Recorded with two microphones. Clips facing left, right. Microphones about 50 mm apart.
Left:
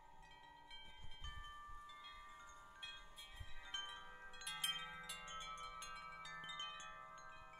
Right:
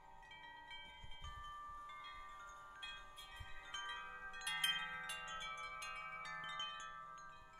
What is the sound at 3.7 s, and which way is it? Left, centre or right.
Wind chime, right.